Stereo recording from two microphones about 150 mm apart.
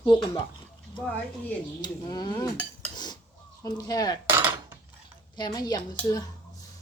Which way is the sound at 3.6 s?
25° left (ahead or behind).